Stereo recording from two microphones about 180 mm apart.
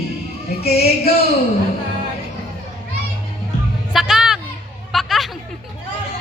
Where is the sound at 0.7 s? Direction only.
35° left (ahead or behind).